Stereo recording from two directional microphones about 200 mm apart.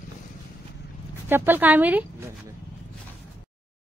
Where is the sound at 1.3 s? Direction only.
10° right (ahead or behind).